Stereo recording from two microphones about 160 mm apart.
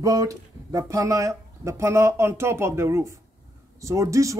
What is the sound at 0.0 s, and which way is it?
Speech, 20° right (ahead or behind).